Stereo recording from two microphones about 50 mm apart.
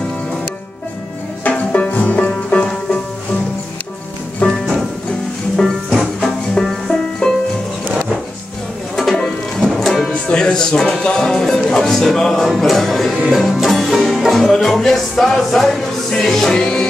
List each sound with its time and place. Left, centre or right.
1.4 s music: left
4.4 s music: left
6.6 s music: centre
7.2 s music: centre
8.9 s music: centre
10.2 s speech: centre
12.4 s music: centre